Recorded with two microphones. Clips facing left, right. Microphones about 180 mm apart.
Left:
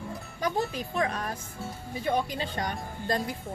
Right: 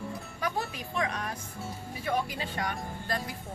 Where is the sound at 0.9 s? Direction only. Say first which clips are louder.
Left 2 dB; 35° left (ahead or behind).